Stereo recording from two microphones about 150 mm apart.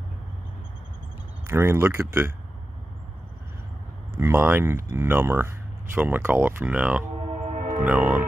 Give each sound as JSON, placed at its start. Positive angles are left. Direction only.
{"t": 1.5, "sound": "speech", "side_deg": -15}
{"t": 4.2, "sound": "speech", "side_deg": -15}
{"t": 7.5, "sound": "music", "side_deg": -50}
{"t": 7.8, "sound": "speech", "side_deg": -10}